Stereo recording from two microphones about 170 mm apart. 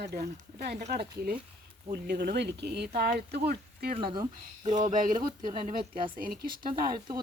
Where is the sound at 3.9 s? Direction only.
30° right (ahead or behind).